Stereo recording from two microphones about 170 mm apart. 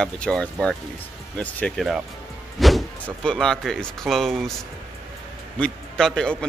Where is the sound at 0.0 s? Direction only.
5° left (ahead or behind).